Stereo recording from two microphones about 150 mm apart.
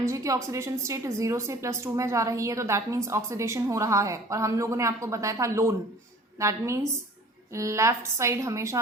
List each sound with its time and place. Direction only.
0.0 s a woman's voice: 20° right (ahead or behind)